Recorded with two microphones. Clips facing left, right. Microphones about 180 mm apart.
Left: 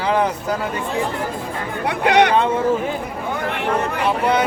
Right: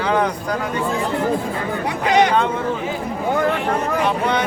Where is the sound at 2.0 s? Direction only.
65° left (ahead or behind).